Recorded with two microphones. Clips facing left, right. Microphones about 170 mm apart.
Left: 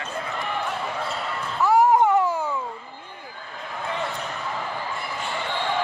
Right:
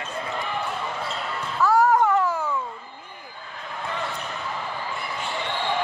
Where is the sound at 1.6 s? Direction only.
20° left (ahead or behind).